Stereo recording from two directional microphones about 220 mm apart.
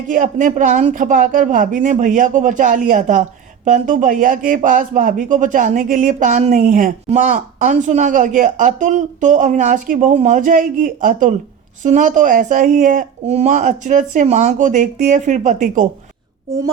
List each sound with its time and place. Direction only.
0.1 s speech: 35° right (ahead or behind)